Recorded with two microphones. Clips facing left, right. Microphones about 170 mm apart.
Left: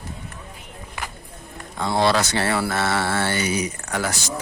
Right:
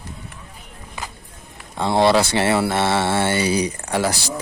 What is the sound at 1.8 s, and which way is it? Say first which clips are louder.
Speech: right 4 dB; 25° right (ahead or behind).